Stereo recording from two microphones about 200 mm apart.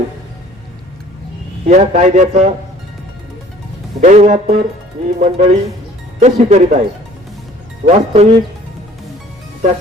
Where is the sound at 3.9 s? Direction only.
35° right (ahead or behind).